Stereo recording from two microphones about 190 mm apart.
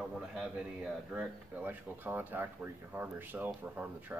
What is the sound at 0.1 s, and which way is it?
A man's voice, 5° right (ahead or behind).